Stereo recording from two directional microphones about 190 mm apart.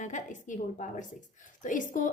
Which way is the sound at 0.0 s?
40° left (ahead or behind).